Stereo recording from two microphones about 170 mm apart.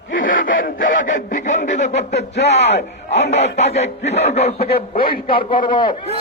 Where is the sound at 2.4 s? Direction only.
90° left.